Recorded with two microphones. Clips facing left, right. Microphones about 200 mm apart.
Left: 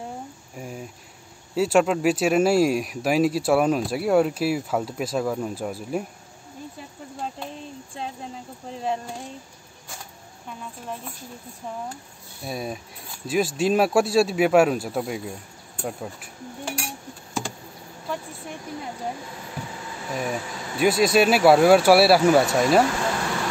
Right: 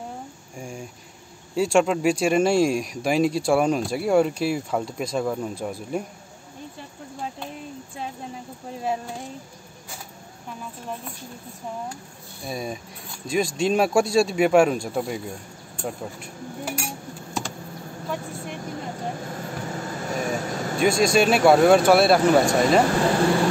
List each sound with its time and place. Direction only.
0.6 s cricket: 5° left (ahead or behind)
1.5 s speech: 5° left (ahead or behind)
8.8 s speech: 5° right (ahead or behind)
12.4 s speech: centre (ahead or behind)
15.8 s cutlery: centre (ahead or behind)
19.2 s vehicle: 50° right (ahead or behind)
20.8 s speech: 5° left (ahead or behind)